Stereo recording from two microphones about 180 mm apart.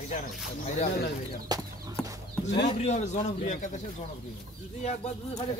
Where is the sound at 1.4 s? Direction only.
20° right (ahead or behind).